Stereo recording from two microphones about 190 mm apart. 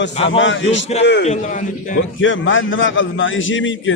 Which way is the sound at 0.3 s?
80° left.